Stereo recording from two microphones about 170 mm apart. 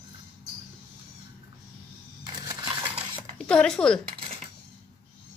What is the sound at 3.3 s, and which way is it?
Speech, 5° left (ahead or behind).